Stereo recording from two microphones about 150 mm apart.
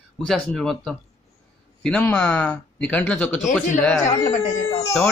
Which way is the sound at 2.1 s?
10° left (ahead or behind).